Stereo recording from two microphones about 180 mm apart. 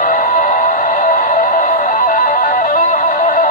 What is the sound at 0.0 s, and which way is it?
Music, 45° left (ahead or behind).